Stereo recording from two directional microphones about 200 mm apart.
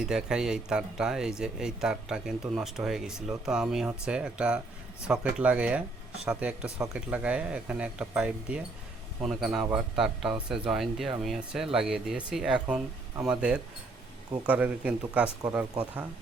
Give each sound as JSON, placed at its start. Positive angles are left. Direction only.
{"t": 0.0, "sound": "speech", "side_deg": -5}